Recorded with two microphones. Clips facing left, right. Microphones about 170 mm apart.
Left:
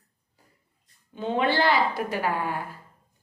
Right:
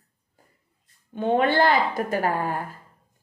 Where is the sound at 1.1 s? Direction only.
55° right (ahead or behind).